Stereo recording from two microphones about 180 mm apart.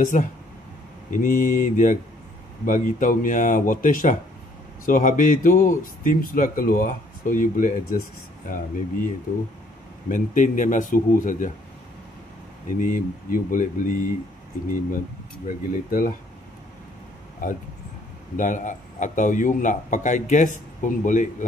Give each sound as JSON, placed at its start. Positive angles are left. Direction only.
{"t": 0.0, "sound": "a man's voice", "side_deg": 45}
{"t": 12.7, "sound": "a man's voice", "side_deg": 45}
{"t": 15.4, "sound": "a man's voice", "side_deg": 50}
{"t": 17.4, "sound": "a man's voice", "side_deg": 50}